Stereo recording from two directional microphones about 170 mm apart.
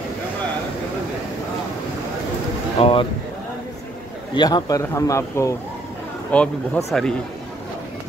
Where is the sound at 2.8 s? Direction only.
35° left (ahead or behind).